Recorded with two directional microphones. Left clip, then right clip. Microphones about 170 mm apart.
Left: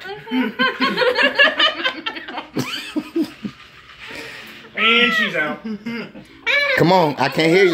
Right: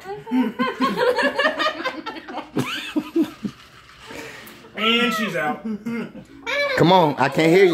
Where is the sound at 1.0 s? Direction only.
80° right.